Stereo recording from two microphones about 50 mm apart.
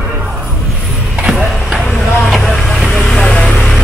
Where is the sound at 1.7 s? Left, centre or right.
Centre.